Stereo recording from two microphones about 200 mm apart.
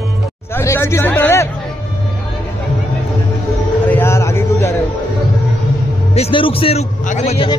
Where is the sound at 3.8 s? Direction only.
10° left (ahead or behind).